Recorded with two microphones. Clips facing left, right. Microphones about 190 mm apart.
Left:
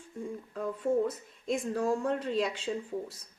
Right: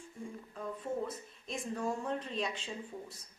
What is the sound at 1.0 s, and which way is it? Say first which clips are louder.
Speech: left 10 dB; 85° left.